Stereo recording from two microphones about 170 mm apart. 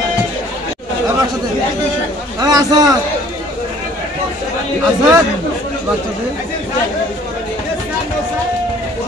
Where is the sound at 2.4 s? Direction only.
25° right (ahead or behind).